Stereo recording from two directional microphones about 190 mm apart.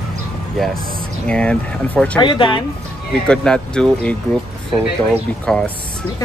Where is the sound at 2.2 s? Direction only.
25° left (ahead or behind).